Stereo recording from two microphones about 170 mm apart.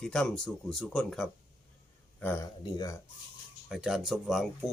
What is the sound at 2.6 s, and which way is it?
Speech, 25° left (ahead or behind).